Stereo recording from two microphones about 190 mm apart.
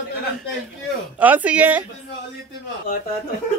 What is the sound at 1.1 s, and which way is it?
Speech, 10° right (ahead or behind).